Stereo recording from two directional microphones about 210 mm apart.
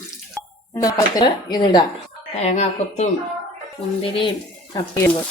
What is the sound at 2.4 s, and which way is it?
Speech, 30° left (ahead or behind).